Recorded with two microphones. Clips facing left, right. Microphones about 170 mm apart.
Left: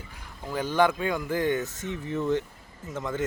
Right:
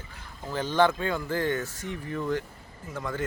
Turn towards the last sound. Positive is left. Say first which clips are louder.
# left 2 dB
turn(degrees=20)  # may be behind; listen again after turning